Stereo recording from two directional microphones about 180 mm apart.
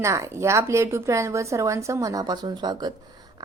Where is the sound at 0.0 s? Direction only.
15° right (ahead or behind).